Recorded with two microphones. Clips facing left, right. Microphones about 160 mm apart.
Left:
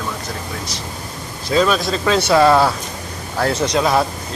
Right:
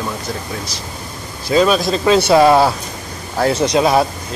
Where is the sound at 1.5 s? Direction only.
10° right (ahead or behind).